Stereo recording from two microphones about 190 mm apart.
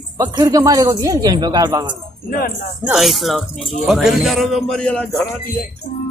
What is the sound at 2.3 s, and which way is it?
Speech, 50° left (ahead or behind).